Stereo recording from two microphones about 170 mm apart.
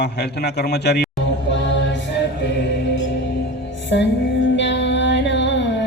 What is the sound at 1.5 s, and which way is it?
A capella, 90° left.